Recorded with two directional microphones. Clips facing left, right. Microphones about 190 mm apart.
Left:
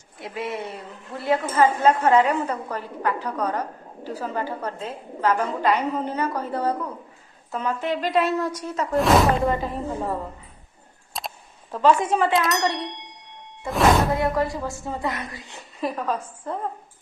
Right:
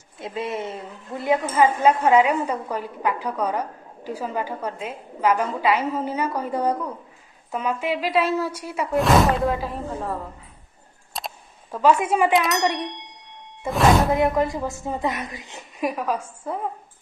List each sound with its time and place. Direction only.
0.2 s a woman's voice: 20° right (ahead or behind); by 10.1 s centre (ahead or behind)
11.1 s a sound: 5° right (ahead or behind)
12.4 s ding: centre (ahead or behind)
14.1 s a woman's voice: 20° right (ahead or behind)